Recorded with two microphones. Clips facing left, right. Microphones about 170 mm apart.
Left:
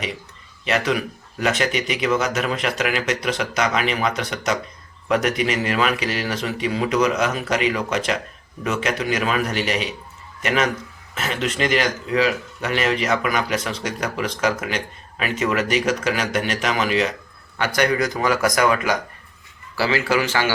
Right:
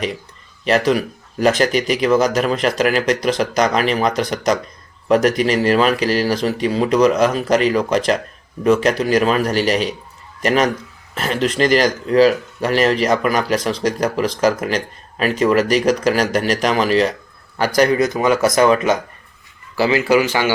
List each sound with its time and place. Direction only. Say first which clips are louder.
0.6 s speech: right 6 dB; 35° right (ahead or behind)
17.7 s a man's voice: right 5 dB; 25° right (ahead or behind)